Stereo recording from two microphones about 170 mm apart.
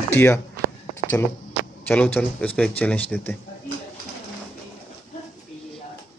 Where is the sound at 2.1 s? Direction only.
10° left (ahead or behind).